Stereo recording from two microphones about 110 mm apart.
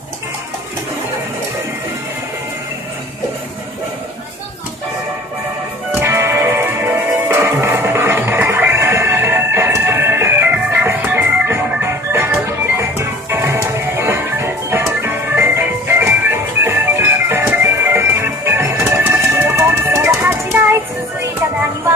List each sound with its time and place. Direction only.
5.9 s music: 20° right (ahead or behind)